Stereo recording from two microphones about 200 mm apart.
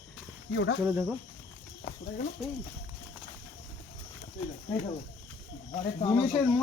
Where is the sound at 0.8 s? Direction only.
10° right (ahead or behind).